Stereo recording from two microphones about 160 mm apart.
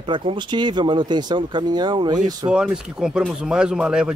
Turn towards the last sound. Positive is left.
turn(degrees=-5)  # may be behind; listen again after turning